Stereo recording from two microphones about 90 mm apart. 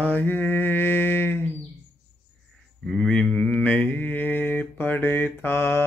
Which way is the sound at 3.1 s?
10° left (ahead or behind).